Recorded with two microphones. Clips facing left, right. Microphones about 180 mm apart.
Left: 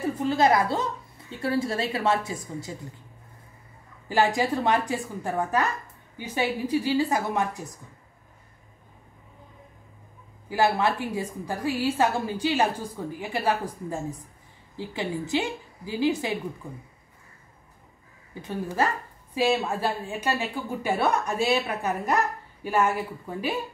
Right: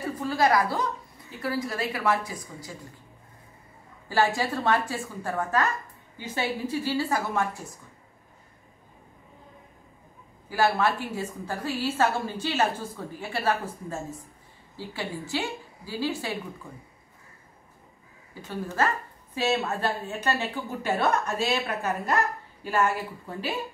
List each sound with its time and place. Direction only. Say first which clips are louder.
0.2 s a woman's voice: left 1 dB; 25° left (ahead or behind)
4.1 s a woman's voice: left 2 dB; 15° left (ahead or behind)
10.5 s a woman's voice: left 1 dB; 20° left (ahead or behind)
18.4 s a woman's voice: left 1 dB; 15° left (ahead or behind)